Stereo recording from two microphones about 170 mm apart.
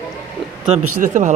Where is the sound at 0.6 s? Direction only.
40° right (ahead or behind).